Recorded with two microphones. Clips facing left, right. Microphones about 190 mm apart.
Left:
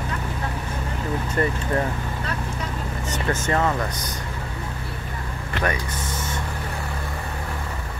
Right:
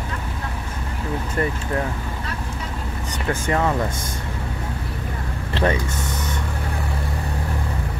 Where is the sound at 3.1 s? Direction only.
10° right (ahead or behind).